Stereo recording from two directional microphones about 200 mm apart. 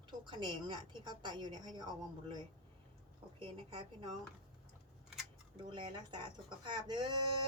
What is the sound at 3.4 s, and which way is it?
Speech, 25° right (ahead or behind).